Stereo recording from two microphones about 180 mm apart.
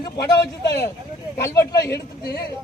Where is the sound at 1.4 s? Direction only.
15° left (ahead or behind).